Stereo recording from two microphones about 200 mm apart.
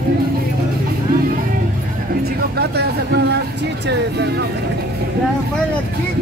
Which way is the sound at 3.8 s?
55° right (ahead or behind).